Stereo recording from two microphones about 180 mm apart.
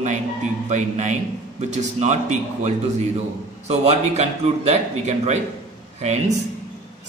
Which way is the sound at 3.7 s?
40° right (ahead or behind).